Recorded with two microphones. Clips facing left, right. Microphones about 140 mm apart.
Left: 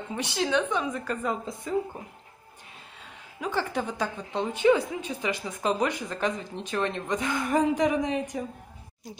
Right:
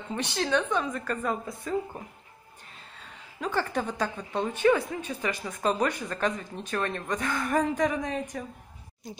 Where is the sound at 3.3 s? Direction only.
10° left (ahead or behind).